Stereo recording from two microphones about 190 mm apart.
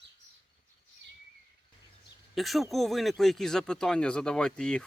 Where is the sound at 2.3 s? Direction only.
Centre (ahead or behind).